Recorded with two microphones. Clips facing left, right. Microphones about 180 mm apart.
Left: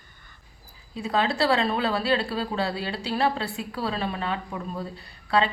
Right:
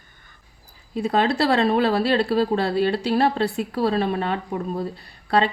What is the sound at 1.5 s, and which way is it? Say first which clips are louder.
Speech: right 6 dB; 40° right (ahead or behind).